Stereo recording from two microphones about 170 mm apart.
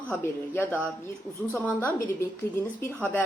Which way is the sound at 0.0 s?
10° left (ahead or behind).